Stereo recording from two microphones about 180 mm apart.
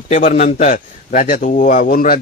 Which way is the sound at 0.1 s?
40° left (ahead or behind).